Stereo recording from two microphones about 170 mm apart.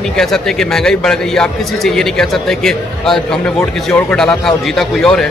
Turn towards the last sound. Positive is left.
turn(degrees=5)  # may be behind; listen again after turning